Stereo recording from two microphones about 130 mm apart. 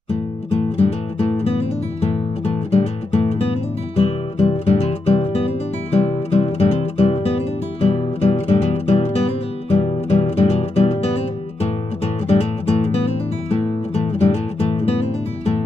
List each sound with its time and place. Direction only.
0.1 s music: 45° left (ahead or behind)
12.3 s music: 50° left (ahead or behind)